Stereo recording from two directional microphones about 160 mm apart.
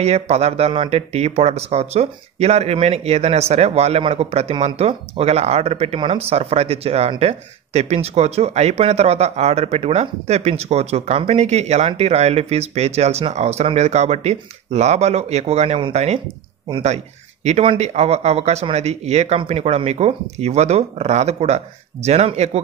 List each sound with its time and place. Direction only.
0.0 s speech: 40° right (ahead or behind)
17.5 s speech: 40° right (ahead or behind)